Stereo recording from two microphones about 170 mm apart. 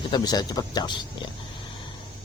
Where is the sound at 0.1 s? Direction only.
25° left (ahead or behind).